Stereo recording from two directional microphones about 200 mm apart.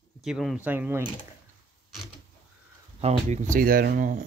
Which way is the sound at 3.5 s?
45° right (ahead or behind).